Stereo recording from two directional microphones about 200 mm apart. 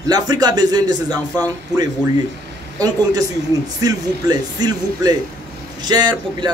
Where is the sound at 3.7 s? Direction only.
20° right (ahead or behind).